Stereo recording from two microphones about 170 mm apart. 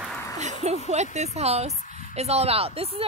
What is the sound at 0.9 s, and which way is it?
Speech, 40° right (ahead or behind).